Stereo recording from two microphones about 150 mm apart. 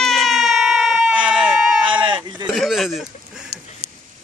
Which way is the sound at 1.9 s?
30° right (ahead or behind).